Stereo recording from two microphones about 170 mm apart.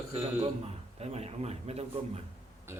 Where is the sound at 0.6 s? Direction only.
35° right (ahead or behind).